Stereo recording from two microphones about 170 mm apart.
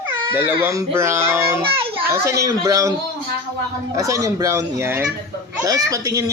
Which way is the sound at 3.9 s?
20° right (ahead or behind).